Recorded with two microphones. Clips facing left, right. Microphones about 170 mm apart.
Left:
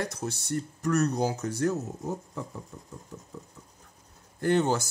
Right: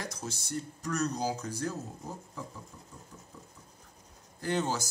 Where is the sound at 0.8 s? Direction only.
65° left (ahead or behind).